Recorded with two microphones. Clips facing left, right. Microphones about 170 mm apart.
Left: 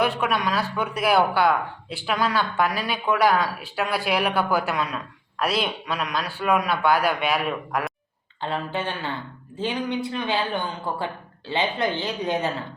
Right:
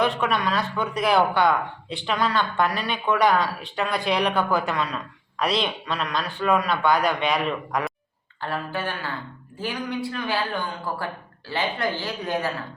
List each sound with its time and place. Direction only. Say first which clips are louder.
0.0 s speech: even; 5° left (ahead or behind)
8.4 s speech: left 1 dB; 20° left (ahead or behind)